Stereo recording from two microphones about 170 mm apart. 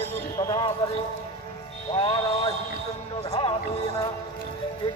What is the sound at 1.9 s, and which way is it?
Speech, 35° left (ahead or behind).